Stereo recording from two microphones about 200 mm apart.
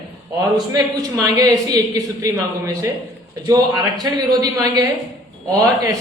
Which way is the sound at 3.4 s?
20° right (ahead or behind).